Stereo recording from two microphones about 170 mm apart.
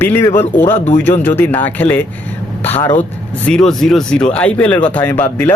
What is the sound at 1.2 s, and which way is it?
Speech, 10° left (ahead or behind).